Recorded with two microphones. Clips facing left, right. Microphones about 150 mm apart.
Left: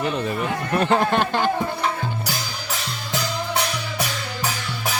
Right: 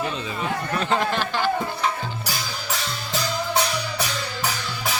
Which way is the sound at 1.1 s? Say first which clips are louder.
Left 4 dB; 55° left (ahead or behind).